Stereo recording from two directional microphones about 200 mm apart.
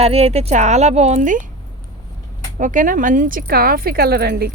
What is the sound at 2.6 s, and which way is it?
Speech, 40° right (ahead or behind).